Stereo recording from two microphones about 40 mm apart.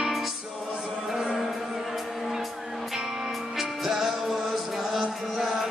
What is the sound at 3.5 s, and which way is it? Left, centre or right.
Music, centre.